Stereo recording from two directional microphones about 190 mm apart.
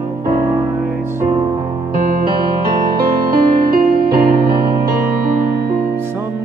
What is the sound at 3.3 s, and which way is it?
Music, 50° right (ahead or behind).